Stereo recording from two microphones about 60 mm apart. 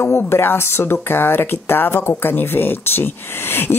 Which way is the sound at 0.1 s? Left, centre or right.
Left.